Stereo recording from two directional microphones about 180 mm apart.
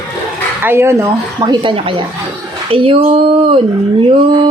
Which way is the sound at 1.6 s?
25° right (ahead or behind).